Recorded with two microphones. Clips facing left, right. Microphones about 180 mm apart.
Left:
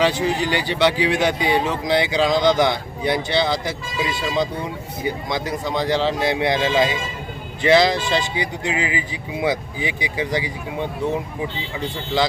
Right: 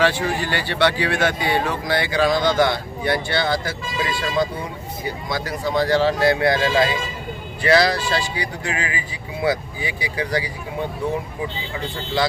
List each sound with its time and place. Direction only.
0.0 s speech: 15° left (ahead or behind)